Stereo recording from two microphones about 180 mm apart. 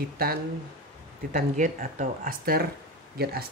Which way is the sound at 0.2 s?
55° right (ahead or behind).